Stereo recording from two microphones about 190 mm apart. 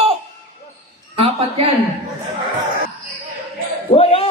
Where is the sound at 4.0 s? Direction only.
30° left (ahead or behind).